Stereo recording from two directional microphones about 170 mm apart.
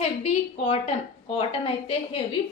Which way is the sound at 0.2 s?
35° left (ahead or behind).